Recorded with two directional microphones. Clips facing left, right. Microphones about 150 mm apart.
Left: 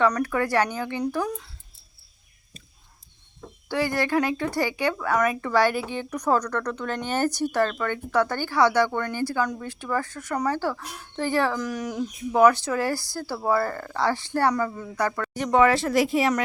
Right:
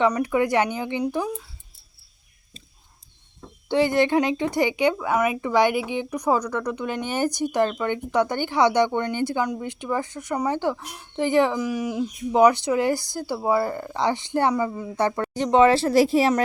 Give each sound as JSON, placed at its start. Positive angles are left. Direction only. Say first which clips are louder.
{"t": 0.0, "sound": "a woman's voice", "louder": "right 2 dB", "side_deg": -15}
{"t": 3.7, "sound": "a woman's voice", "louder": "right 5 dB", "side_deg": -25}
{"t": 14.9, "sound": "speech", "louder": "right 3 dB", "side_deg": -25}